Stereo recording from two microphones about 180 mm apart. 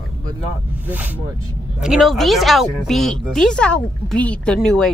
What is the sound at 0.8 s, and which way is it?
Speech, 10° right (ahead or behind).